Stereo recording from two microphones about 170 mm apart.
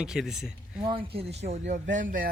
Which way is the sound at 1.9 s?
50° right (ahead or behind).